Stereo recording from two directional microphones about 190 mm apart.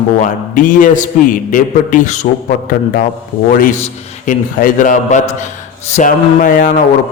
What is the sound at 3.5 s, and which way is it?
A man's voice, 45° left (ahead or behind).